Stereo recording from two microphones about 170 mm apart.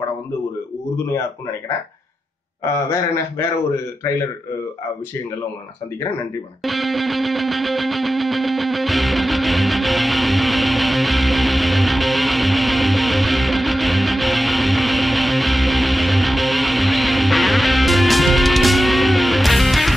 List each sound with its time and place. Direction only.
2.6 s a man's voice: 15° left (ahead or behind)
6.6 s music: centre (ahead or behind)